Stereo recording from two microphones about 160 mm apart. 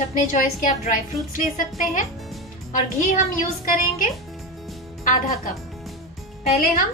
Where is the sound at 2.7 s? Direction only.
50° left (ahead or behind).